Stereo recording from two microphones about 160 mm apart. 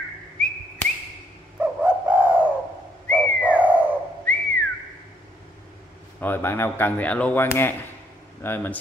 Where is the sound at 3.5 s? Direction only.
10° right (ahead or behind).